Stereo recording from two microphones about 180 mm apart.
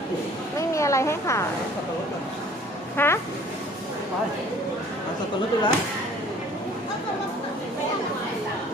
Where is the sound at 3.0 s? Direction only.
15° left (ahead or behind).